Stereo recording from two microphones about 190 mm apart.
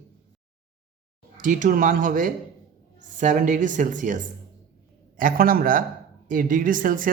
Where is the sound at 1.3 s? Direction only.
45° right (ahead or behind).